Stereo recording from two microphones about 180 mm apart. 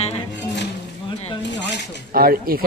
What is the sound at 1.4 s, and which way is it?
Speech, 75° left (ahead or behind).